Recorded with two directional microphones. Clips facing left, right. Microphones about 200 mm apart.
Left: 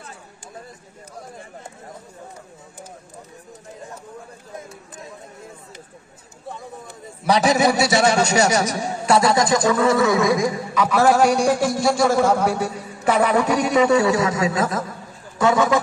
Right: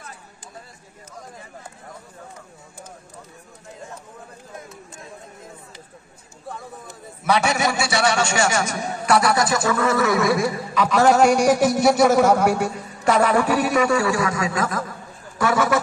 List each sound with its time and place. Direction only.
7.2 s speech: 35° left (ahead or behind)
9.0 s speech: 25° left (ahead or behind); by 11.3 s 5° left (ahead or behind)
11.3 s music: 15° right (ahead or behind)
13.0 s a man's voice: 10° left (ahead or behind)